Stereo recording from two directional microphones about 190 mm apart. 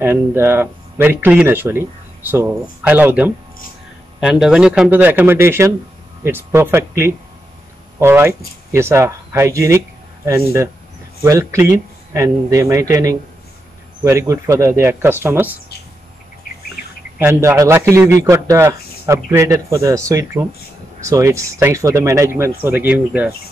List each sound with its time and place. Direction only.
0.0 s speech: 10° right (ahead or behind)
17.2 s speech: 15° right (ahead or behind)